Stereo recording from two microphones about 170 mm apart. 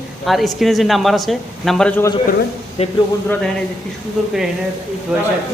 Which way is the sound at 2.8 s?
40° left (ahead or behind).